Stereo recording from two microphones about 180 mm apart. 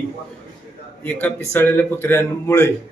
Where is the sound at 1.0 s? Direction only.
10° left (ahead or behind).